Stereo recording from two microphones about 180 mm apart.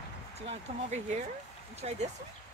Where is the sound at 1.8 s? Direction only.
35° right (ahead or behind).